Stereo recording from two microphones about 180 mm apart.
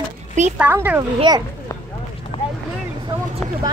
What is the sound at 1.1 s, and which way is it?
Speech, 25° right (ahead or behind).